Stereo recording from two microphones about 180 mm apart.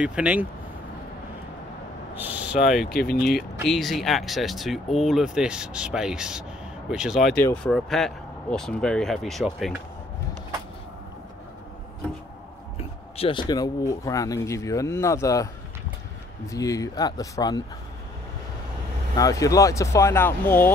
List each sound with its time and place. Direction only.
0.0 s speech: 5° right (ahead or behind)
2.1 s speech: 10° right (ahead or behind)
2.8 s speech: 55° left (ahead or behind)
3.1 s speech: centre (ahead or behind)
12.7 s speech: 30° left (ahead or behind)
16.4 s speech: 20° left (ahead or behind)
19.1 s speech: 20° left (ahead or behind)